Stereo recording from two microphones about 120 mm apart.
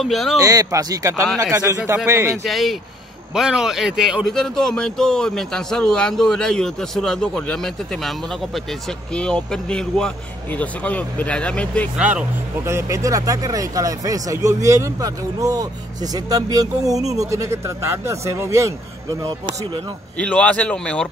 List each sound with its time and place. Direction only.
0.0 s a man's voice: centre (ahead or behind)
0.4 s speech: 30° right (ahead or behind)
2.4 s a man's voice: centre (ahead or behind)
9.1 s speech: 10° left (ahead or behind)
12.0 s speech: 10° right (ahead or behind)
12.6 s speech: 25° right (ahead or behind)
19.4 s speech: 40° right (ahead or behind)
20.2 s speech: 10° left (ahead or behind)